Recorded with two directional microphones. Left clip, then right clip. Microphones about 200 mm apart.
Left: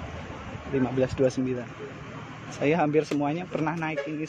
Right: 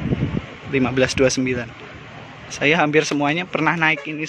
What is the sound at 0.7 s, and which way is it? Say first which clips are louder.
Speech: right 8 dB; 15° right (ahead or behind).